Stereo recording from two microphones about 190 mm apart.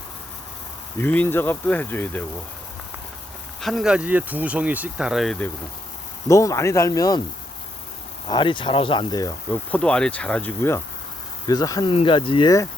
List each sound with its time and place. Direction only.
0.9 s speech: 10° left (ahead or behind)
3.6 s speech: centre (ahead or behind)
6.2 s speech: 15° left (ahead or behind)
8.3 s speech: 25° left (ahead or behind)
9.7 s speech: 5° left (ahead or behind); by 12.6 s 20° left (ahead or behind)